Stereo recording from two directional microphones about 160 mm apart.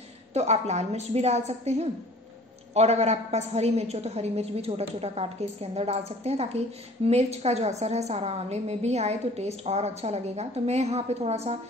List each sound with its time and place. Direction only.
0.3 s a woman's voice: 45° right (ahead or behind)